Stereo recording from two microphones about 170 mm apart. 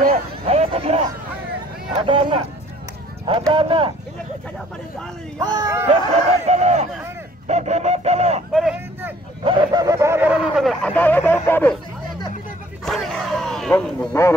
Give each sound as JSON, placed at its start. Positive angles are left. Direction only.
{"t": 0.0, "sound": "a sound", "side_deg": -45}
{"t": 2.0, "sound": "speech", "side_deg": -30}
{"t": 3.3, "sound": "fowl", "side_deg": -30}
{"t": 5.4, "sound": "speech", "side_deg": -20}
{"t": 6.4, "sound": "fowl", "side_deg": -40}
{"t": 8.5, "sound": "vehicle", "side_deg": -5}
{"t": 9.4, "sound": "speech", "side_deg": -30}
{"t": 12.8, "sound": "a sound", "side_deg": 0}